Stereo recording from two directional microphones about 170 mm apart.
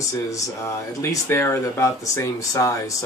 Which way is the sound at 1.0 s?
15° left (ahead or behind).